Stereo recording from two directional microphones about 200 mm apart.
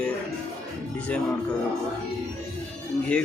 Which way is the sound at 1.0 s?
5° left (ahead or behind).